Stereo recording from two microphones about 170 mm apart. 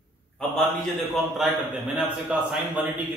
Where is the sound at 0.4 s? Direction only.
Centre (ahead or behind).